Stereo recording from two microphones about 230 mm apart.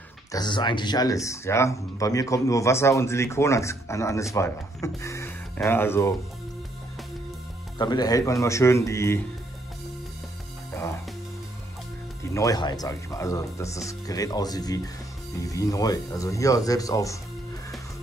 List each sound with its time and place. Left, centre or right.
0.3 s speech: centre
7.8 s speech: centre
12.2 s speech: centre